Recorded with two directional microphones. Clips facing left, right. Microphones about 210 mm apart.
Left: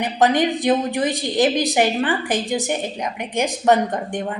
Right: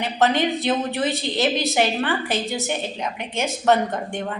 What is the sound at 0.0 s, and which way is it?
A woman's voice, 15° left (ahead or behind).